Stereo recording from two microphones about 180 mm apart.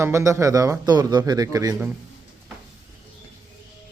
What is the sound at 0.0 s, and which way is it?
A man's voice, 15° right (ahead or behind).